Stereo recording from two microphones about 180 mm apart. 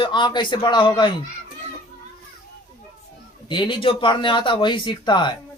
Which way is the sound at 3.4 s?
25° left (ahead or behind).